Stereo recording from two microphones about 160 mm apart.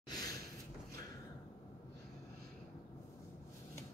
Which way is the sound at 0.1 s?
25° left (ahead or behind).